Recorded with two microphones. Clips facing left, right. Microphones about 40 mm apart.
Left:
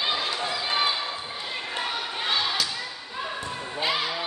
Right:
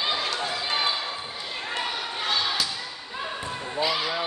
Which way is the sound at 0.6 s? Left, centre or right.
Centre.